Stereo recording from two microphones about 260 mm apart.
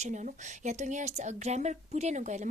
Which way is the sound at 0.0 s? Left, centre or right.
Right.